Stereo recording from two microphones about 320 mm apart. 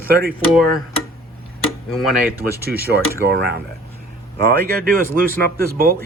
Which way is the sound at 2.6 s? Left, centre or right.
Right.